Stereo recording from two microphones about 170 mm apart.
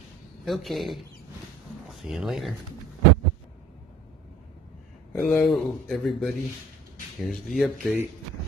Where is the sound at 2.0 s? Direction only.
Centre (ahead or behind).